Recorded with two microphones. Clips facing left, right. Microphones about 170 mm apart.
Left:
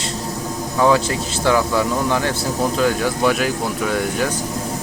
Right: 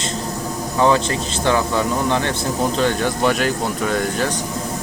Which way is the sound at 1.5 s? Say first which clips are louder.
Left 1 dB; 20° right (ahead or behind).